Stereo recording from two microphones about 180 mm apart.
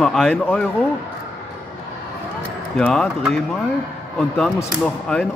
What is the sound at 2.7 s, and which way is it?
Speech, 5° left (ahead or behind).